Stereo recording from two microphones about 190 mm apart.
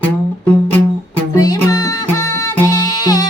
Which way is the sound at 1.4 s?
20° left (ahead or behind).